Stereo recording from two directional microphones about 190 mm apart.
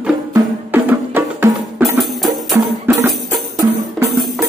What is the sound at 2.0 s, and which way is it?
Music, centre (ahead or behind).